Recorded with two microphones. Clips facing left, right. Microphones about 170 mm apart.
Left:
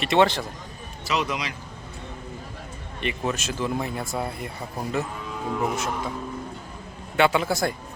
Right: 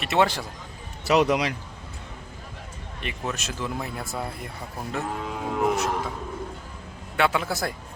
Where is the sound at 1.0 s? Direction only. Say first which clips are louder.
Right 6 dB; 60° right (ahead or behind).